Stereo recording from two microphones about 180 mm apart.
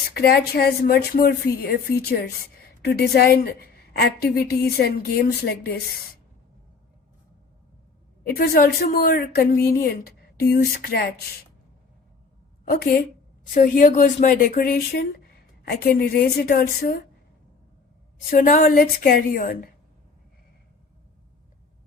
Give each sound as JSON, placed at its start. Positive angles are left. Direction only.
{"t": 0.1, "sound": "a woman's voice", "side_deg": 60}
{"t": 8.4, "sound": "a woman's voice", "side_deg": 60}
{"t": 12.6, "sound": "a woman's voice", "side_deg": 60}
{"t": 13.5, "sound": "a woman's voice", "side_deg": 45}
{"t": 18.3, "sound": "speech", "side_deg": 50}